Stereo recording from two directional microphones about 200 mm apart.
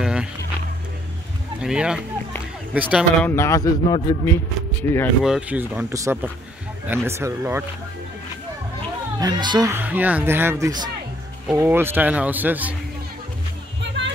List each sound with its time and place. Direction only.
0.0 s music: 5° right (ahead or behind)
1.6 s speech: 5° right (ahead or behind)
3.3 s a man's voice: 15° left (ahead or behind)
5.2 s speech: 5° right (ahead or behind)
9.2 s speech: 20° right (ahead or behind)